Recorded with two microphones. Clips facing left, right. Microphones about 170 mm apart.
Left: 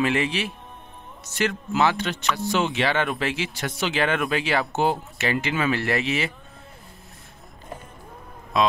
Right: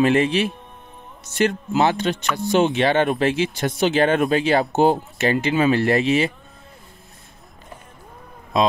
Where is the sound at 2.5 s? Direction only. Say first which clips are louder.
Right 7 dB; 55° right (ahead or behind).